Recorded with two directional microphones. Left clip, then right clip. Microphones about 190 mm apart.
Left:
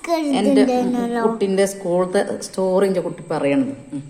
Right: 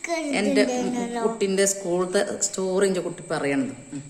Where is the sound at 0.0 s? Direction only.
25° left (ahead or behind).